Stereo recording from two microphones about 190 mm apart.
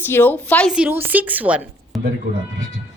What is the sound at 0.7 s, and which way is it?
A woman's voice, 5° right (ahead or behind).